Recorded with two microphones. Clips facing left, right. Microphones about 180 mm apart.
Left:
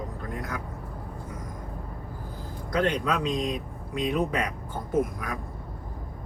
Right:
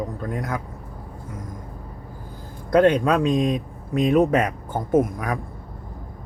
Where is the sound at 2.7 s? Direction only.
55° right (ahead or behind).